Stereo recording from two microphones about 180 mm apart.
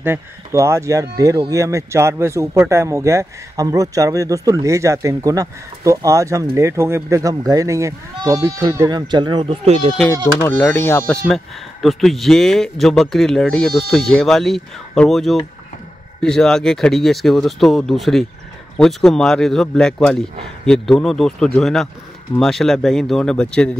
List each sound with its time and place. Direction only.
0.0 s a man's voice: 15° right (ahead or behind)
10.2 s speech: 10° left (ahead or behind)